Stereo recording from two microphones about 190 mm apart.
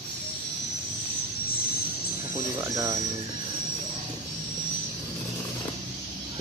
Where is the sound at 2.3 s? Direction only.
15° right (ahead or behind).